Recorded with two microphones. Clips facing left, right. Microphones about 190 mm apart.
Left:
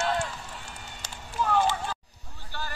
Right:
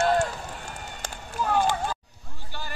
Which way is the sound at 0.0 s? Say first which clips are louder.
Right 6 dB; 45° right (ahead or behind).